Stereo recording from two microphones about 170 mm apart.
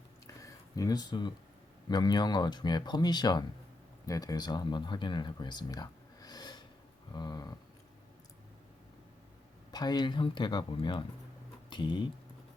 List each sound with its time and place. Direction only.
0.4 s speech: 20° left (ahead or behind)
9.7 s speech: 25° left (ahead or behind)